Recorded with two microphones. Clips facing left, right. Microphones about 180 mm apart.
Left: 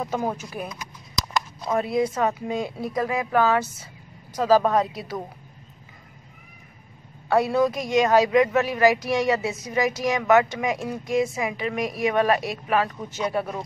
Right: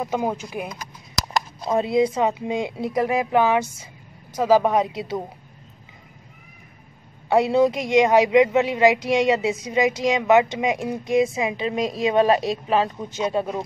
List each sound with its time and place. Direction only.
0.0 s a woman's voice: 10° right (ahead or behind)
1.3 s a woman's voice: 25° right (ahead or behind)
7.2 s a woman's voice: 20° right (ahead or behind)